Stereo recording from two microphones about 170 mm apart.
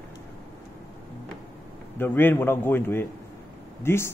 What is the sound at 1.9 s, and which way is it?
Speech, 10° left (ahead or behind).